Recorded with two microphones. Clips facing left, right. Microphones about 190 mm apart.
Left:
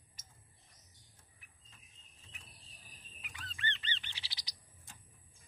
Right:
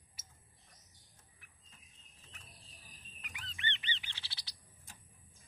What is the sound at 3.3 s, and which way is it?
Goose, 15° right (ahead or behind).